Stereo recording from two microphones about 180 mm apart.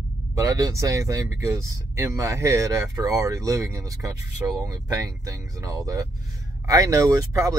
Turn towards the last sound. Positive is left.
turn(degrees=-20)  # may be behind; listen again after turning